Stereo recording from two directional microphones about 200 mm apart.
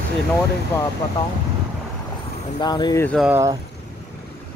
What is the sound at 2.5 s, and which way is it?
Speech, 20° left (ahead or behind).